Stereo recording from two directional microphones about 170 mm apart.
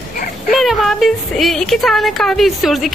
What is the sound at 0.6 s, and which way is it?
Speech, centre (ahead or behind).